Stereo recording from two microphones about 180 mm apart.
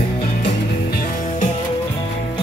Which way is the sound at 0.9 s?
50° left (ahead or behind).